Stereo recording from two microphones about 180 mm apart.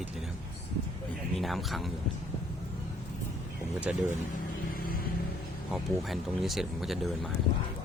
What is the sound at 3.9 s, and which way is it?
Speech, 5° right (ahead or behind).